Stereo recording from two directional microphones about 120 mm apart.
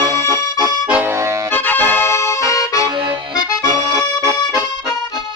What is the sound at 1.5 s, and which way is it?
Accordion, 15° left (ahead or behind).